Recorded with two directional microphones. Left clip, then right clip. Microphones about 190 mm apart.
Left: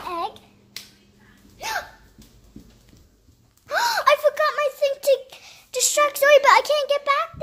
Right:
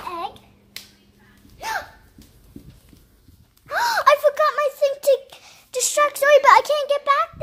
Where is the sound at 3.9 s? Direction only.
20° right (ahead or behind).